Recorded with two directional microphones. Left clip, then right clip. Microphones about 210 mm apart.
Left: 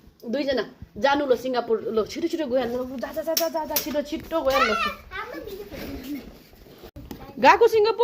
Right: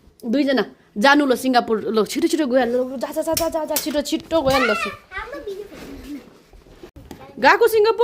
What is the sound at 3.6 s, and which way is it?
Speech, 50° right (ahead or behind).